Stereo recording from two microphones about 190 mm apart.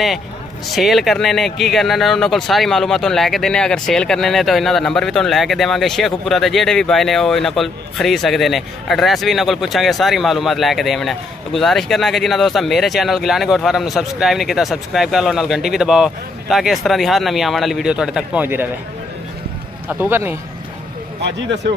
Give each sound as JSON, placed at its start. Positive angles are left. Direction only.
{"t": 0.7, "sound": "speech", "side_deg": 0}
{"t": 19.9, "sound": "speech", "side_deg": -10}
{"t": 21.2, "sound": "speech", "side_deg": -65}